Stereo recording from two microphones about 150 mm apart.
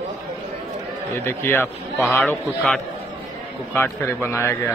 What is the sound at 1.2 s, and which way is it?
Speech, 15° left (ahead or behind).